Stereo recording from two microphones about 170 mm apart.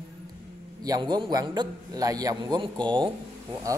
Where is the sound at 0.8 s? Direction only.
25° right (ahead or behind).